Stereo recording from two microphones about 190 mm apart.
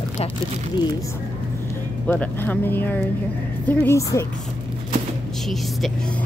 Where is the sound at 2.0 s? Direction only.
10° left (ahead or behind).